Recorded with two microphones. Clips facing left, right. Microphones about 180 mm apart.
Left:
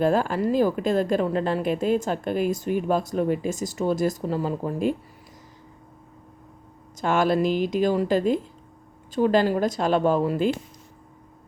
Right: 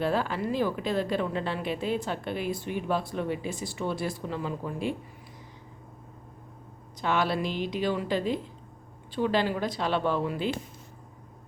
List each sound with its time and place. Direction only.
0.0 s speech: 45° left (ahead or behind)
7.0 s speech: 45° left (ahead or behind)